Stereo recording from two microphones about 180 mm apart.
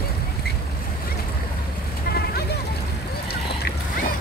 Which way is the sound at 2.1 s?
60° left (ahead or behind).